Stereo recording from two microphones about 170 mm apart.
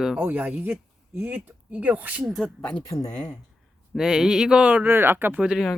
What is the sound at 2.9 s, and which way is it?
Speech, 20° left (ahead or behind).